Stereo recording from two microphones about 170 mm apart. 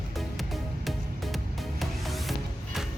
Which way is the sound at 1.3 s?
Centre (ahead or behind).